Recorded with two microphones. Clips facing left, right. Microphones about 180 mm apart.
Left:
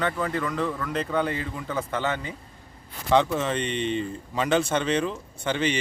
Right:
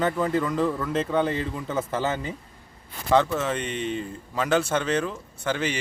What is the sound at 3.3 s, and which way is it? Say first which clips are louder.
Speech: left 1 dB; 5° right (ahead or behind).